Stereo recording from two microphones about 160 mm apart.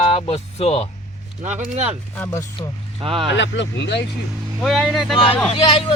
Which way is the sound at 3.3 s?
90° left.